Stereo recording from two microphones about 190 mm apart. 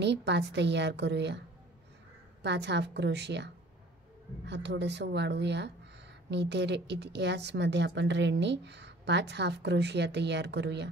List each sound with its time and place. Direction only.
0.0 s a woman's voice: 65° right (ahead or behind)
2.4 s a woman's voice: 65° right (ahead or behind)